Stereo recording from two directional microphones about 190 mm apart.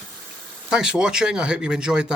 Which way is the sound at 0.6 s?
5° right (ahead or behind).